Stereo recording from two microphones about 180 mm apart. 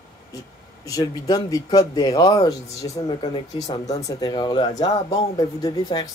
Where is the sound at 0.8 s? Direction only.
20° left (ahead or behind).